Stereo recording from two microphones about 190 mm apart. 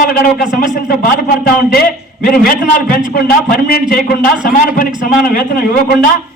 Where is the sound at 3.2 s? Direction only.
50° left (ahead or behind).